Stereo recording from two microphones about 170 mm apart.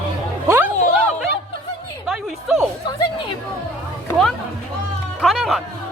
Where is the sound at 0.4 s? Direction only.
15° right (ahead or behind).